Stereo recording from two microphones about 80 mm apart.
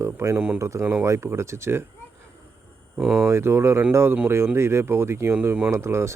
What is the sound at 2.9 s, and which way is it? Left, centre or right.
Speech, centre.